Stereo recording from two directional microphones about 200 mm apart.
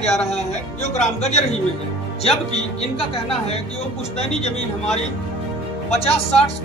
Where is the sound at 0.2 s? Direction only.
35° left (ahead or behind).